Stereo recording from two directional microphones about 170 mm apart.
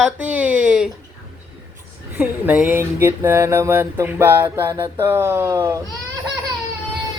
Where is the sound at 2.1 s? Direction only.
10° right (ahead or behind).